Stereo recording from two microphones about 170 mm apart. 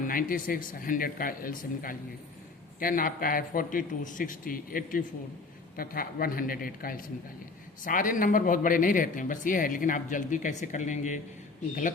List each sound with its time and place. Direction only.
0.0 s a man's voice: 55° left (ahead or behind)